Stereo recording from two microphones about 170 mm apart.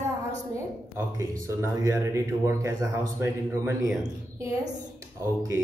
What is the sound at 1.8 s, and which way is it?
A man's voice, 15° right (ahead or behind).